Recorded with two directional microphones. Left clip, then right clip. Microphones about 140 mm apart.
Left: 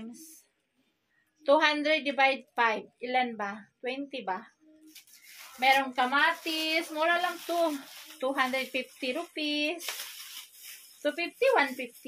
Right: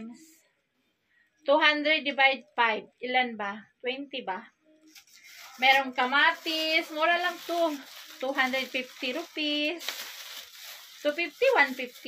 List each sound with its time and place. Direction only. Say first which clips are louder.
1.4 s a woman's voice: right 1 dB; 35° left (ahead or behind)
5.6 s a woman's voice: right 2 dB; 35° left (ahead or behind)
8.2 s a woman's voice: right 1 dB; 35° left (ahead or behind)
11.0 s a woman's voice: right 2 dB; 35° left (ahead or behind)